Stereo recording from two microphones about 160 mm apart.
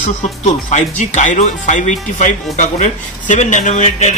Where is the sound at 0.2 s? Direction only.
50° left (ahead or behind).